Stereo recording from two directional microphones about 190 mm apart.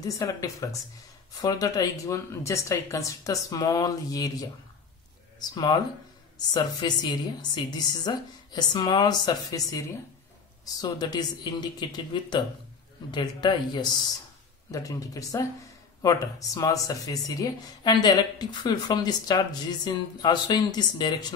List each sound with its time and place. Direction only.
0.0 s speech: 20° left (ahead or behind)